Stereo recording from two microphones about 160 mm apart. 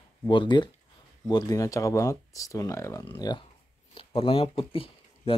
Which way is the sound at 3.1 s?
30° left (ahead or behind).